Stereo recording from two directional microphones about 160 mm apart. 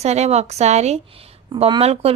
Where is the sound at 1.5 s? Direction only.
30° right (ahead or behind).